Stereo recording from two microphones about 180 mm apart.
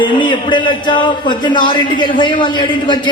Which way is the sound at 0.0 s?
25° left (ahead or behind).